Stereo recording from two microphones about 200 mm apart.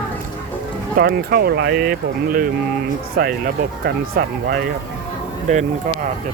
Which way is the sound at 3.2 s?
50° right (ahead or behind).